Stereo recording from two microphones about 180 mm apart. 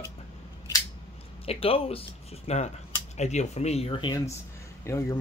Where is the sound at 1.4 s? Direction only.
30° left (ahead or behind).